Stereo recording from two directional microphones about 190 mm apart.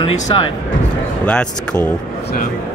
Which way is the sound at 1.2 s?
5° left (ahead or behind).